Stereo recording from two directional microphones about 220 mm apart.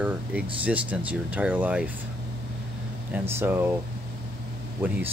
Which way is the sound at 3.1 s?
10° right (ahead or behind).